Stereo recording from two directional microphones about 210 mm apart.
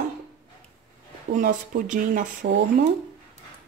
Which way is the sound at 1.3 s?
40° right (ahead or behind).